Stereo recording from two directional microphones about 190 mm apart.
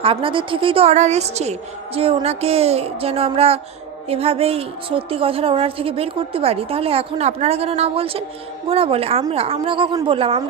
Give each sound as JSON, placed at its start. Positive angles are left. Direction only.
{"t": 0.0, "sound": "a woman's voice", "side_deg": -30}